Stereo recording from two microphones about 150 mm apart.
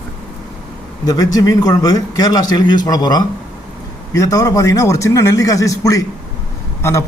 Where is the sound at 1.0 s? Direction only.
25° left (ahead or behind).